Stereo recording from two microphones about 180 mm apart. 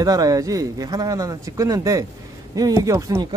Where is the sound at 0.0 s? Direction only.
20° right (ahead or behind).